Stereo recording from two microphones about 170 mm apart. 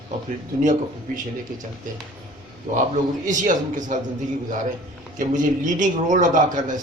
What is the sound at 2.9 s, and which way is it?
A man's voice, 50° right (ahead or behind).